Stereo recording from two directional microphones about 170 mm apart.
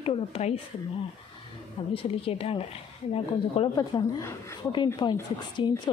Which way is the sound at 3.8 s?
20° left (ahead or behind).